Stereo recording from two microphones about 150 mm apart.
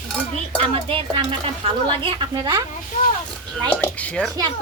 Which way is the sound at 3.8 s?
10° left (ahead or behind).